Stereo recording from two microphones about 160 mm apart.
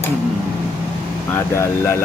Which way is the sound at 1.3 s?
15° left (ahead or behind).